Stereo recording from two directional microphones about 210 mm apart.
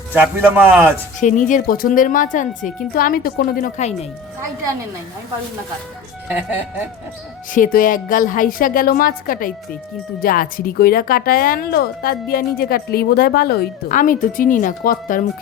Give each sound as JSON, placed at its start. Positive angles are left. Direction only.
{"t": 0.1, "sound": "a man's voice", "side_deg": -10}
{"t": 1.2, "sound": "a woman's voice", "side_deg": 35}
{"t": 6.2, "sound": "a man's voice", "side_deg": -5}
{"t": 7.5, "sound": "a woman's voice", "side_deg": 40}